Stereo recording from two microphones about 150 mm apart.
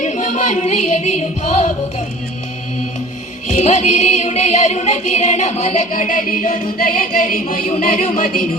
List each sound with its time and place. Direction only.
0.0 s music: 55° left (ahead or behind)
3.5 s music: 50° left (ahead or behind)